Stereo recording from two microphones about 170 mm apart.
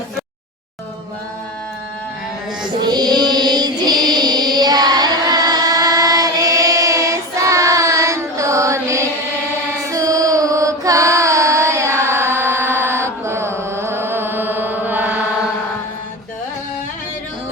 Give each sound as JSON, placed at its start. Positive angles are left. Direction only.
{"t": 2.8, "sound": "music", "side_deg": -25}
{"t": 9.9, "sound": "chant", "side_deg": -20}